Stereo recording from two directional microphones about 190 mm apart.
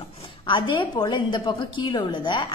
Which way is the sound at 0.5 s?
25° left (ahead or behind).